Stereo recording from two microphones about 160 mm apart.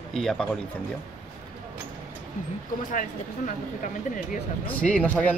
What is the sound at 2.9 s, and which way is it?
Speech, 55° left (ahead or behind).